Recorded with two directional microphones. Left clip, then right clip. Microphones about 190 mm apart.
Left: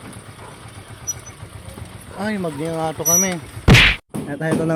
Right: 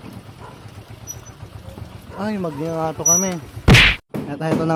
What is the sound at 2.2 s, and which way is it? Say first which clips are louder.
Speech: left 1 dB; 10° right (ahead or behind).